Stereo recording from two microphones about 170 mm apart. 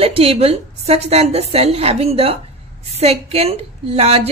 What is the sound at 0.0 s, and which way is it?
A woman's voice, 35° right (ahead or behind).